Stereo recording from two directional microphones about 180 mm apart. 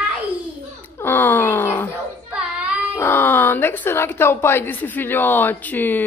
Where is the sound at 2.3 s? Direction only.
5° right (ahead or behind).